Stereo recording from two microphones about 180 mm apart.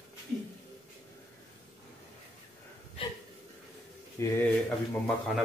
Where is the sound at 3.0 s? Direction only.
30° left (ahead or behind).